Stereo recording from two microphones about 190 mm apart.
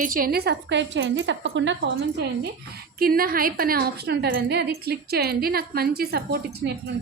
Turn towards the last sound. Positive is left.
turn(degrees=-55)  # may be behind; listen again after turning